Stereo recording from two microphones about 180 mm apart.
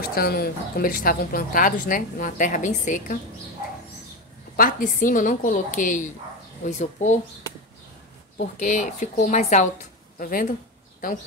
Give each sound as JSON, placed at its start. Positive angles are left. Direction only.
{"t": 0.0, "sound": "a woman's voice", "side_deg": 55}
{"t": 4.6, "sound": "a woman's voice", "side_deg": 50}
{"t": 8.4, "sound": "a woman's voice", "side_deg": 45}